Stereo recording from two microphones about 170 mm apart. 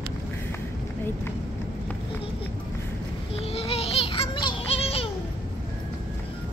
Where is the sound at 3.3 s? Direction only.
35° left (ahead or behind).